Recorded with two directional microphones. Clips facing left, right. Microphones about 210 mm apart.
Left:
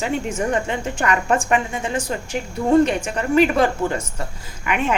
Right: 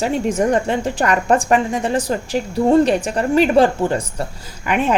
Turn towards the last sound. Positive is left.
turn(degrees=-35)  # may be behind; listen again after turning